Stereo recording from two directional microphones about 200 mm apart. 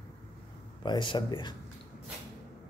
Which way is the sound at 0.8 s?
25° left (ahead or behind).